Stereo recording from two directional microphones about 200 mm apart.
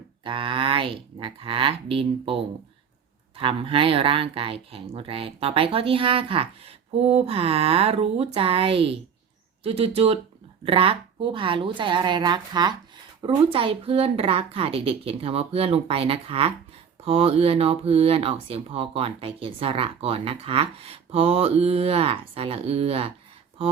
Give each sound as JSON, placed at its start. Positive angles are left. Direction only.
{"t": 0.3, "sound": "speech", "side_deg": -25}